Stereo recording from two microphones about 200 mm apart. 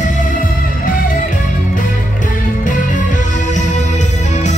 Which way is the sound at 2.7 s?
40° left (ahead or behind).